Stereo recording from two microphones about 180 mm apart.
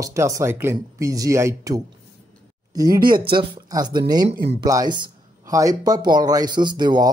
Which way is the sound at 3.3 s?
20° right (ahead or behind).